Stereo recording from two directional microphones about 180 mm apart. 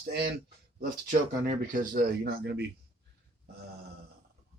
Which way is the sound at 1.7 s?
50° right (ahead or behind).